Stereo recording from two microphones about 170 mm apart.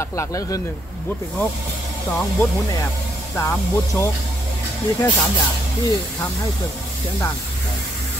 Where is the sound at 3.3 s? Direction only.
15° left (ahead or behind).